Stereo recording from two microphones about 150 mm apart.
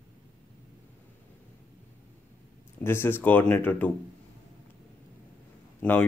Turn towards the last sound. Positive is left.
turn(degrees=10)  # may be behind; listen again after turning